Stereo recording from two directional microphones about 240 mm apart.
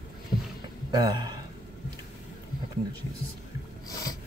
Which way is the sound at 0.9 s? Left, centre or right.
Centre.